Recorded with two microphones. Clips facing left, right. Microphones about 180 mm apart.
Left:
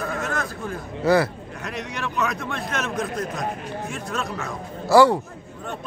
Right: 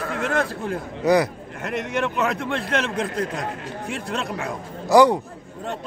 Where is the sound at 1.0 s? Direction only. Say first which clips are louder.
Right 1 dB; 15° right (ahead or behind).